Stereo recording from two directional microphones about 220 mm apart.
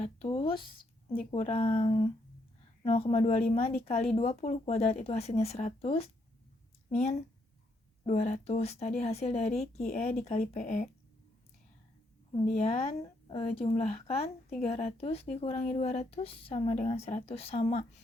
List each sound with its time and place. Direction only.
0.0 s speech: 25° left (ahead or behind)
12.3 s speech: 30° left (ahead or behind)